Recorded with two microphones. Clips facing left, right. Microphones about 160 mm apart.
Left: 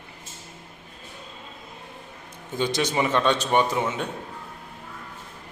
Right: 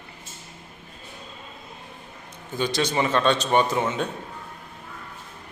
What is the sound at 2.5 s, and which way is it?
A man's voice, 20° left (ahead or behind).